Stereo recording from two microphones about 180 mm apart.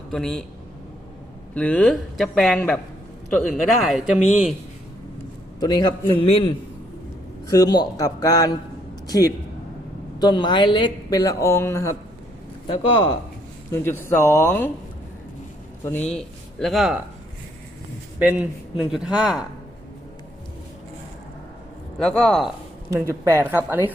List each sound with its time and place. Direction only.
0.1 s speech: 5° left (ahead or behind)
1.5 s speech: 5° left (ahead or behind)
5.5 s a woman's voice: 25° left (ahead or behind)
7.4 s a woman's voice: 20° left (ahead or behind)
12.6 s a woman's voice: 30° left (ahead or behind)
13.7 s a man's voice: 15° left (ahead or behind)
15.8 s speech: 10° left (ahead or behind)
18.2 s speech: 10° right (ahead or behind)
21.9 s speech: centre (ahead or behind)
22.9 s a woman's voice: 15° right (ahead or behind)